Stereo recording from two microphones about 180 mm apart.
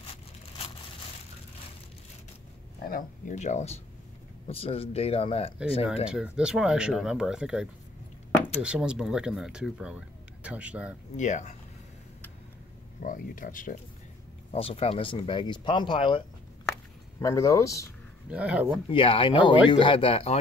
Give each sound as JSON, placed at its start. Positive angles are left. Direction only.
{"t": 2.8, "sound": "speech", "side_deg": 50}
{"t": 6.0, "sound": "speech", "side_deg": -5}
{"t": 8.6, "sound": "speech", "side_deg": -5}
{"t": 11.1, "sound": "speech", "side_deg": 40}
{"t": 13.0, "sound": "speech", "side_deg": 50}
{"t": 14.5, "sound": "speech", "side_deg": 35}
{"t": 17.2, "sound": "speech", "side_deg": 15}
{"t": 18.3, "sound": "speech", "side_deg": -5}
{"t": 18.9, "sound": "speech", "side_deg": 30}